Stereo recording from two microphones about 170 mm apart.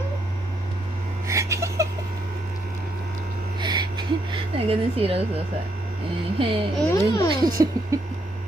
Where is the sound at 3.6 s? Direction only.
25° right (ahead or behind).